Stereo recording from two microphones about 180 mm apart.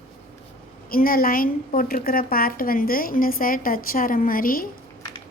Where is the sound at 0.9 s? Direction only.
55° left (ahead or behind).